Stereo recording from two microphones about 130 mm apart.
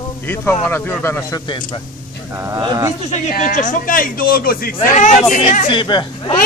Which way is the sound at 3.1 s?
75° left (ahead or behind).